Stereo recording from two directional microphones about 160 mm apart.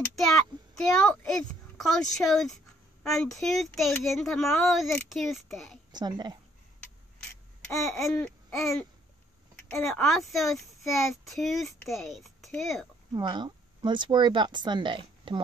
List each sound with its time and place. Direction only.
0.2 s a child's voice: 5° left (ahead or behind)
5.9 s a woman's voice: 25° right (ahead or behind)
7.8 s babbling: centre (ahead or behind)
9.7 s speech: 15° left (ahead or behind)
10.0 s a child's voice: centre (ahead or behind)
13.1 s speech: 25° right (ahead or behind)